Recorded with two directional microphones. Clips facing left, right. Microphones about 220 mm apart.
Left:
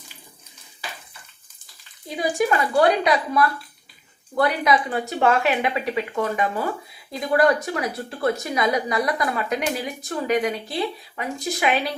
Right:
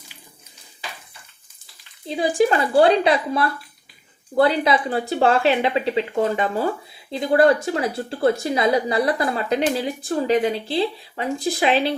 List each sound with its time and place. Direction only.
2.0 s a woman's voice: 30° right (ahead or behind)